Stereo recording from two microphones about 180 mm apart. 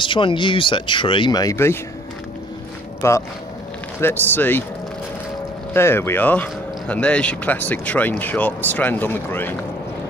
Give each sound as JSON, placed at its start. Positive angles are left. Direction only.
{"t": 0.0, "sound": "speech", "side_deg": 30}
{"t": 3.0, "sound": "speech", "side_deg": 15}
{"t": 5.7, "sound": "speech", "side_deg": 15}